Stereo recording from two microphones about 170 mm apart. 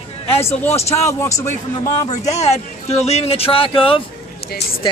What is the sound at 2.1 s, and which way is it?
Speech, 40° left (ahead or behind).